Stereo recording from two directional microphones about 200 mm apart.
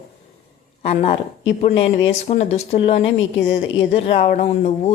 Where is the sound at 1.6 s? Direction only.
30° left (ahead or behind).